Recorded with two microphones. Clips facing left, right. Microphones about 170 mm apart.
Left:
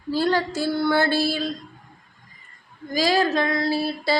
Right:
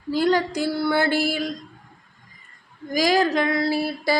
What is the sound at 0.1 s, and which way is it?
Female singing, 15° right (ahead or behind).